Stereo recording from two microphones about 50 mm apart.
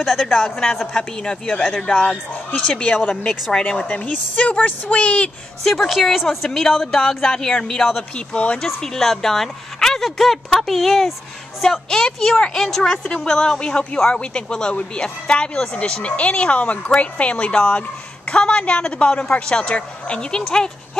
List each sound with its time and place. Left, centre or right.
0.0 s a woman's voice: centre
0.9 s a woman's voice: centre
5.6 s a woman's voice: centre
6.2 s a woman's voice: centre
8.3 s speech: left
8.6 s a woman's voice: centre
14.3 s a woman's voice: centre